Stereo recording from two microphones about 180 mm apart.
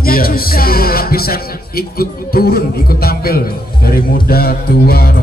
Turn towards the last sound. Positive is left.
turn(degrees=60)  # may be behind; listen again after turning